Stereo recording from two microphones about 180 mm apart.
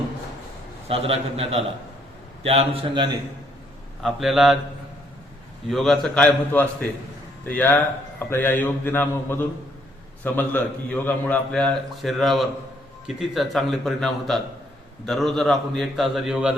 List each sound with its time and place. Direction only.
0.9 s a man's voice: 30° right (ahead or behind)
4.0 s a man's voice: centre (ahead or behind)
5.6 s a man's voice: centre (ahead or behind)